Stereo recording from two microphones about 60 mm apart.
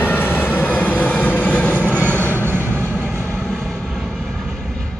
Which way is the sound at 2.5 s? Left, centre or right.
Right.